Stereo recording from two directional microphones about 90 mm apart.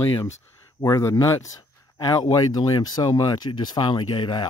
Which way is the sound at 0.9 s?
35° left (ahead or behind).